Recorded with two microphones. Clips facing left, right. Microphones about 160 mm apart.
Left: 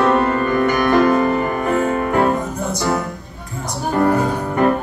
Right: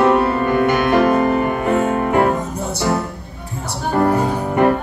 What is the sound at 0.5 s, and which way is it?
Music, 25° right (ahead or behind).